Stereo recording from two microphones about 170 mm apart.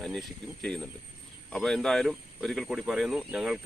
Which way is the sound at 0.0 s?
5° left (ahead or behind).